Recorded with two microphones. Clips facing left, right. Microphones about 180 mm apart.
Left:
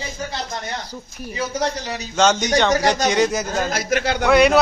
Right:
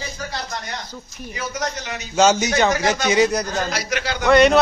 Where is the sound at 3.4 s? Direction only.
50° left (ahead or behind).